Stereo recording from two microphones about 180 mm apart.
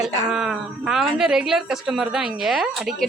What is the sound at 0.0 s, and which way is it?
A woman's voice, 5° right (ahead or behind).